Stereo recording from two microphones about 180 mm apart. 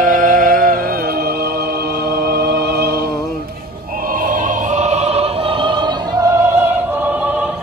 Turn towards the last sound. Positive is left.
turn(degrees=-10)  # may be behind; listen again after turning